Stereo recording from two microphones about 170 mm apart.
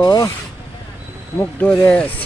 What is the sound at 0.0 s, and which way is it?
Speech, 20° left (ahead or behind).